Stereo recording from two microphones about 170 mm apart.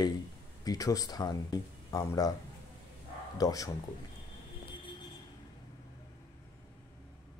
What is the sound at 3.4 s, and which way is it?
Speech, 20° left (ahead or behind).